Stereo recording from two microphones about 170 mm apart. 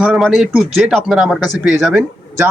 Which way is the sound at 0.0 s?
Centre (ahead or behind).